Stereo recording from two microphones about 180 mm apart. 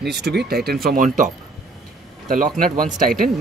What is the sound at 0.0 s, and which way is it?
Speech, 65° right (ahead or behind).